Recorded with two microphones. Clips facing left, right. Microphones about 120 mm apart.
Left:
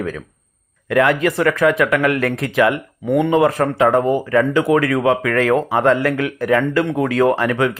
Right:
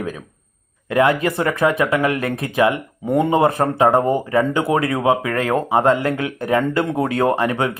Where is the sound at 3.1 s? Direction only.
35° right (ahead or behind).